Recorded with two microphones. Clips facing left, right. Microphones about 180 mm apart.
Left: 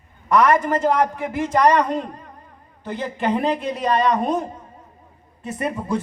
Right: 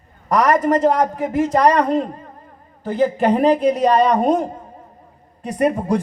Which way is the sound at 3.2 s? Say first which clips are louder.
Right 5 dB; 40° right (ahead or behind).